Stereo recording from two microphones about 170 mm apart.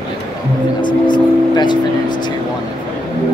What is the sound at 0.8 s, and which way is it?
Speech, 25° left (ahead or behind).